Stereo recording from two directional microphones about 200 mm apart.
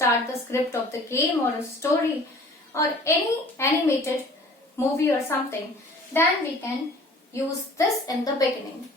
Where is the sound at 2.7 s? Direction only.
15° left (ahead or behind).